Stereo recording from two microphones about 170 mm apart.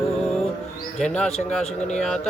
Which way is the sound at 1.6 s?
40° left (ahead or behind).